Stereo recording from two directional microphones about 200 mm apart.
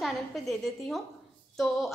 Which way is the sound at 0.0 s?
Centre (ahead or behind).